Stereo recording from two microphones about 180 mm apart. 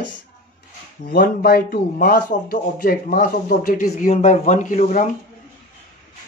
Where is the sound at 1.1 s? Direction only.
60° left (ahead or behind).